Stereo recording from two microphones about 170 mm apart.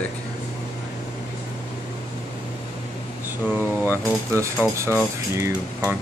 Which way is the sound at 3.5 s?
10° left (ahead or behind).